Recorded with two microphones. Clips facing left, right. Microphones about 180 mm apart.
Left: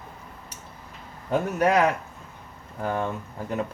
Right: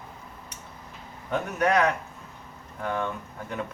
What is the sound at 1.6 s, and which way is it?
Speech, 10° left (ahead or behind).